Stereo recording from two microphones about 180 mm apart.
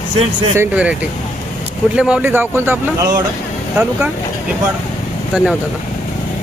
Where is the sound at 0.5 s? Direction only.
10° right (ahead or behind).